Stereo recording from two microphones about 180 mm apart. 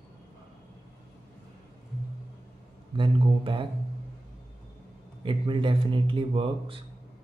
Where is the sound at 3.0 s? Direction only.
30° right (ahead or behind).